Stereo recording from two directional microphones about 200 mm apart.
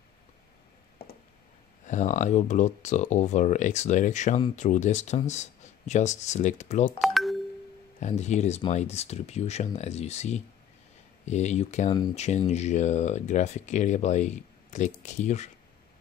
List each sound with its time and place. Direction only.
1.9 s speech: 40° left (ahead or behind)
7.0 s doorbell: centre (ahead or behind)
8.0 s speech: 35° left (ahead or behind)